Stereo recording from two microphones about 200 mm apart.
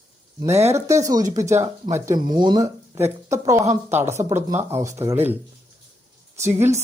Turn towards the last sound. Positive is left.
turn(degrees=-15)  # may be behind; listen again after turning